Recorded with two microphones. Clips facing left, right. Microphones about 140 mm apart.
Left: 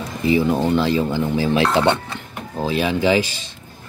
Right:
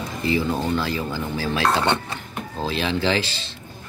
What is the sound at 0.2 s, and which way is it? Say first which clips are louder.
Speech: left 6 dB; 20° left (ahead or behind).